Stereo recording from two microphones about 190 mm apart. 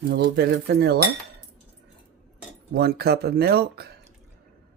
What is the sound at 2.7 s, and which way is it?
Speech, 55° right (ahead or behind).